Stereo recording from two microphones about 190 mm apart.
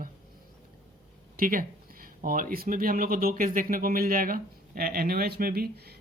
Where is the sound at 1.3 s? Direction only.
45° right (ahead or behind).